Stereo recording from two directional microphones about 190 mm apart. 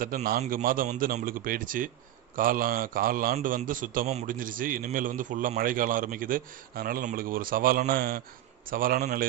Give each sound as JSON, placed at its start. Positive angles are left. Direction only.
{"t": 0.0, "sound": "a man's voice", "side_deg": -50}